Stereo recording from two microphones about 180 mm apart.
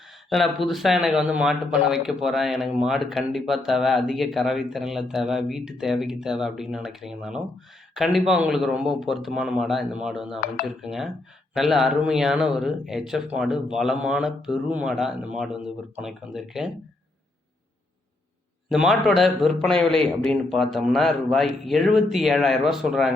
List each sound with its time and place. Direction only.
0.3 s speech: centre (ahead or behind)
18.7 s speech: centre (ahead or behind)